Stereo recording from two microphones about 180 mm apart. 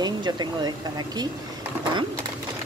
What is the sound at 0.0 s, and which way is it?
Speech, 25° right (ahead or behind).